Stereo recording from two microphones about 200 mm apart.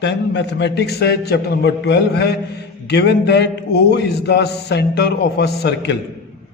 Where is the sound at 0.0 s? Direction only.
60° left (ahead or behind).